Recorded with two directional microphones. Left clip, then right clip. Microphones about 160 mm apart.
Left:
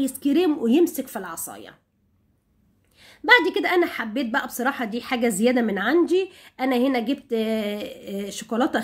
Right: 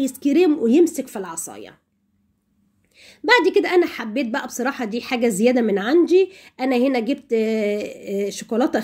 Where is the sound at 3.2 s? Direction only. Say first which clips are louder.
Right 2 dB; 15° right (ahead or behind).